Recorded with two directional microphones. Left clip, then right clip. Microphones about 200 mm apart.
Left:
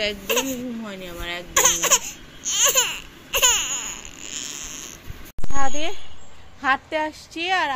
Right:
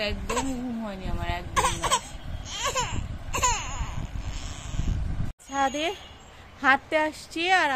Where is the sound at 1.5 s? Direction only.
10° right (ahead or behind).